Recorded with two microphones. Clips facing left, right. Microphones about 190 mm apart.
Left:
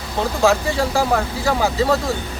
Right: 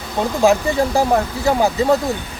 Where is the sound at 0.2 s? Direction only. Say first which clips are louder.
Right 2 dB; 15° right (ahead or behind).